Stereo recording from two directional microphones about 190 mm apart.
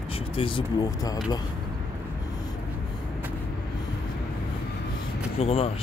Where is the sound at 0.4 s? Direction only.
25° left (ahead or behind).